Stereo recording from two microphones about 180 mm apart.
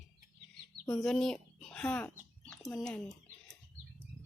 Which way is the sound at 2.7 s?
5° left (ahead or behind).